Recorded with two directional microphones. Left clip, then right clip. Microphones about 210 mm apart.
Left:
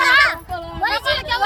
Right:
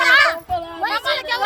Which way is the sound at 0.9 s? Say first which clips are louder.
Even; 15° right (ahead or behind).